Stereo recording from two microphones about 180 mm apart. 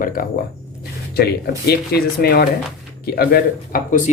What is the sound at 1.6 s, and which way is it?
Speech, 60° left (ahead or behind).